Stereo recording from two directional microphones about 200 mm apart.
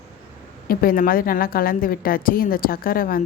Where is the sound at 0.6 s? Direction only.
45° left (ahead or behind).